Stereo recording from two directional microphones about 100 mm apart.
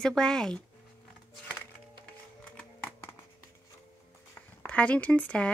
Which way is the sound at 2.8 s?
25° left (ahead or behind).